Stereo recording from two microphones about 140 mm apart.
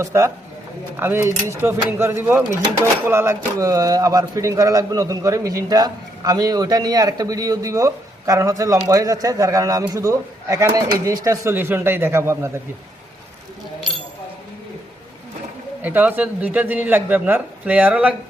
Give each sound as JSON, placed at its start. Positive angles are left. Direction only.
{"t": 0.0, "sound": "speech", "side_deg": -20}
{"t": 15.8, "sound": "speech", "side_deg": -10}